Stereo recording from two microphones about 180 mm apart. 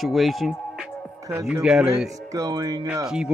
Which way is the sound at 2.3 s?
20° right (ahead or behind).